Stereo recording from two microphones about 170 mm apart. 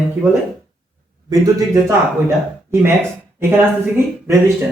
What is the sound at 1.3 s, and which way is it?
Speech, 20° right (ahead or behind).